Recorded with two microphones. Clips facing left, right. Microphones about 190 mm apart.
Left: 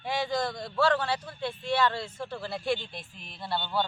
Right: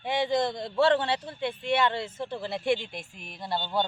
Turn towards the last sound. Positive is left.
turn(degrees=-20)  # may be behind; listen again after turning